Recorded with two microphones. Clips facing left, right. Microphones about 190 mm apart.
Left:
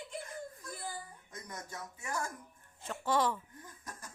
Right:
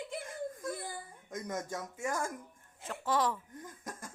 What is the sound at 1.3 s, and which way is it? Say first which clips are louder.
Speech: right 9 dB; 50° right (ahead or behind).